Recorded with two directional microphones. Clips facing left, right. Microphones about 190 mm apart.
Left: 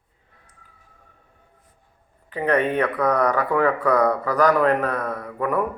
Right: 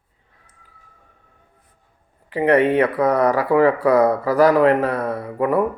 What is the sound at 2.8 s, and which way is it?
A man's voice, 30° right (ahead or behind).